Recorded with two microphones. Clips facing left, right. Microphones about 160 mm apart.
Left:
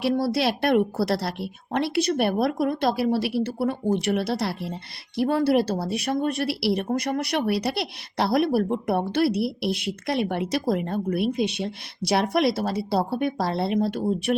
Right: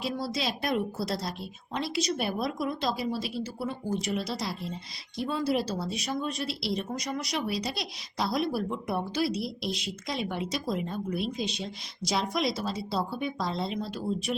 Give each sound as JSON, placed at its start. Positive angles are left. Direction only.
{"t": 0.0, "sound": "a woman's voice", "side_deg": 60}